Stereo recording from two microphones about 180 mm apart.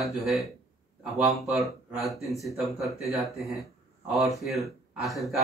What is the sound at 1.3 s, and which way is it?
Speech, centre (ahead or behind).